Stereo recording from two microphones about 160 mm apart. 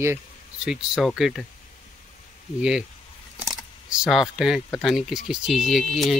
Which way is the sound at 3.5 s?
5° right (ahead or behind).